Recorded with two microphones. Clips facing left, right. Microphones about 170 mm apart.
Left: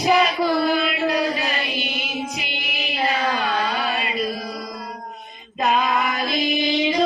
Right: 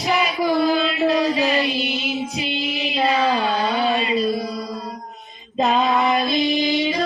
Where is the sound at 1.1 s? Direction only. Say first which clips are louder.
Right 4 dB; 25° right (ahead or behind).